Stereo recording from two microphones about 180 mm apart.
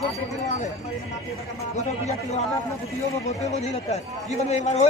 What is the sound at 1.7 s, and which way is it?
A man's voice, 40° left (ahead or behind).